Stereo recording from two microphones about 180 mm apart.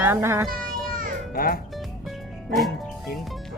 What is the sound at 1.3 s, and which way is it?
Speech, 55° left (ahead or behind).